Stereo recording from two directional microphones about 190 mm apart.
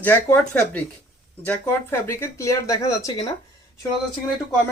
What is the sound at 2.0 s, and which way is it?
A woman's voice, 15° left (ahead or behind).